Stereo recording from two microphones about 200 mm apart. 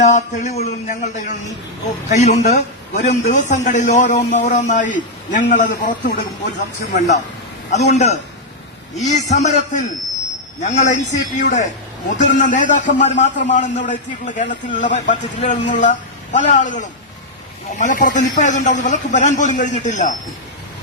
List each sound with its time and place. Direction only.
0.0 s a man's voice: 35° left (ahead or behind)